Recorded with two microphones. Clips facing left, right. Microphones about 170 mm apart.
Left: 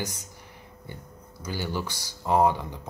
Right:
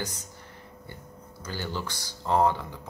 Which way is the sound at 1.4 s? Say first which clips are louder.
Left 3 dB; 10° left (ahead or behind).